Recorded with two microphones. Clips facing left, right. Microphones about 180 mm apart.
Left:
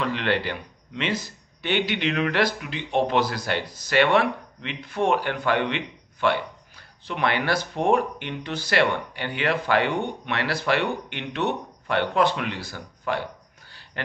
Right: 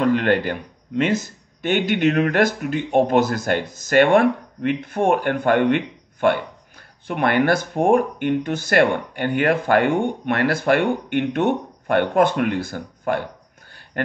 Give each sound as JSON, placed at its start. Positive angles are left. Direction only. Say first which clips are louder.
{"t": 0.0, "sound": "speech", "louder": "right 7 dB", "side_deg": -45}